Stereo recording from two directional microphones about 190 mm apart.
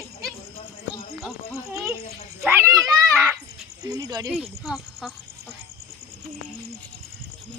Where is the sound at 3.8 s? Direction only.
20° right (ahead or behind).